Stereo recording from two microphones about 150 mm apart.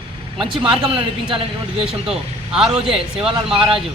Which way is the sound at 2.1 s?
5° right (ahead or behind).